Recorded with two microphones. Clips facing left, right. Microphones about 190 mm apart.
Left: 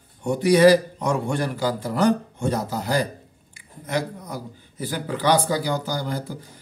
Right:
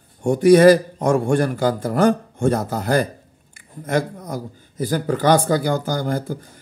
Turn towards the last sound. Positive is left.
turn(degrees=-50)  # may be behind; listen again after turning